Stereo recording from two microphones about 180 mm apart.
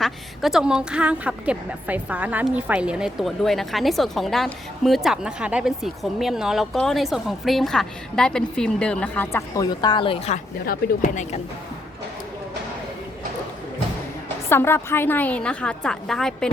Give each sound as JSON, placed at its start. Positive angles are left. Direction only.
{"t": 0.0, "sound": "a woman's voice", "side_deg": 0}
{"t": 14.5, "sound": "a woman's voice", "side_deg": 15}